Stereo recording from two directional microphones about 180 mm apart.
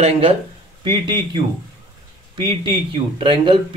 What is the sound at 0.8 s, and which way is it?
Speech, 25° right (ahead or behind).